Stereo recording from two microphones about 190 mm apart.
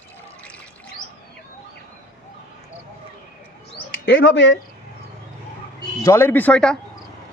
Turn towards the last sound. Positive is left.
turn(degrees=5)  # may be behind; listen again after turning